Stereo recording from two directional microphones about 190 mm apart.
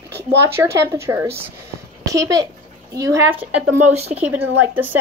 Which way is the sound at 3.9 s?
35° right (ahead or behind).